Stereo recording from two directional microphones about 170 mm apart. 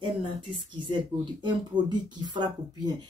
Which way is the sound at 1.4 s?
25° right (ahead or behind).